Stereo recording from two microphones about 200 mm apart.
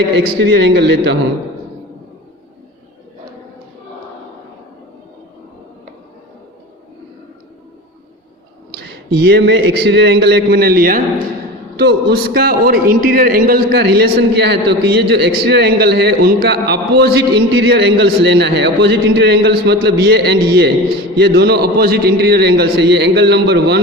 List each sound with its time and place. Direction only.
0.5 s a man's voice: 55° right (ahead or behind)
8.7 s a man's voice: 55° right (ahead or behind)